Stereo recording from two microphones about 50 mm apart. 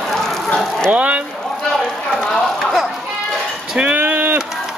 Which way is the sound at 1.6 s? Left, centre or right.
Centre.